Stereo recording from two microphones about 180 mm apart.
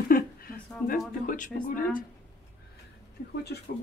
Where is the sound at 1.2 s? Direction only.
45° left (ahead or behind).